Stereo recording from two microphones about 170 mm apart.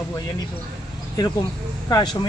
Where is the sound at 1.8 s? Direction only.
25° left (ahead or behind).